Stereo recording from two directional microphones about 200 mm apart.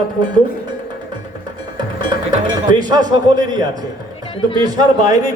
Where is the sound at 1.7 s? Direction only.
20° right (ahead or behind).